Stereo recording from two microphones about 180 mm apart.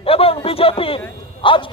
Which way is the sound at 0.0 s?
30° left (ahead or behind).